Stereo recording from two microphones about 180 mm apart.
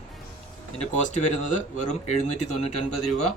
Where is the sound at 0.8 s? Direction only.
40° left (ahead or behind).